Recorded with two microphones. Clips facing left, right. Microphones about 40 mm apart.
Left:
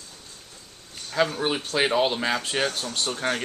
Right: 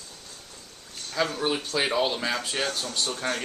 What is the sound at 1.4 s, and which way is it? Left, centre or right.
Speech, centre.